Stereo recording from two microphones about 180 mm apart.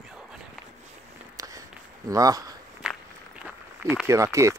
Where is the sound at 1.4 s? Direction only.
20° right (ahead or behind).